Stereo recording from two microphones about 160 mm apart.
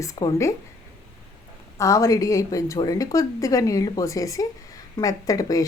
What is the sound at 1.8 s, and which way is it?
A woman's voice, 20° left (ahead or behind).